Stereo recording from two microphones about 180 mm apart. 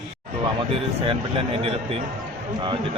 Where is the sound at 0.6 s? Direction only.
30° right (ahead or behind).